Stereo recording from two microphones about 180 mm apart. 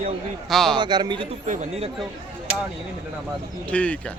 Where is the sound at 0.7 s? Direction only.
25° right (ahead or behind).